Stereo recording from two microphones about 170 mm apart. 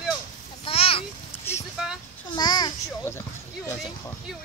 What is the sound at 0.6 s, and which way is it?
Speech, 35° left (ahead or behind).